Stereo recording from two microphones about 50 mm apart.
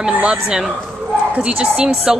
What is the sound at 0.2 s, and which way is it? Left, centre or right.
Speech, right.